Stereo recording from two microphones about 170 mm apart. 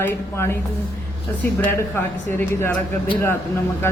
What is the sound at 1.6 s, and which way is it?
A man's voice, 15° left (ahead or behind).